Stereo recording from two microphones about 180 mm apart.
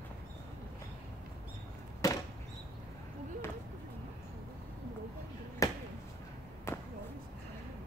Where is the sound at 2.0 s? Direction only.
20° left (ahead or behind).